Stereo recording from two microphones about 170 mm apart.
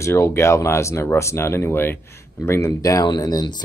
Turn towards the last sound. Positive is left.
turn(degrees=20)  # may be behind; listen again after turning